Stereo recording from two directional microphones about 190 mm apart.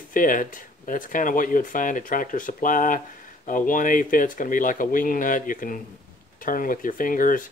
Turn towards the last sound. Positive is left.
turn(degrees=45)  # may be behind; listen again after turning